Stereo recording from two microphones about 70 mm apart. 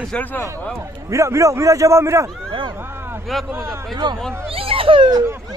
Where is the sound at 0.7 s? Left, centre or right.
Right.